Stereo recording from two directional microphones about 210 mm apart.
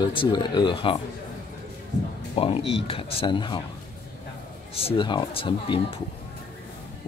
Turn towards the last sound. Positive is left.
turn(degrees=25)  # may be behind; listen again after turning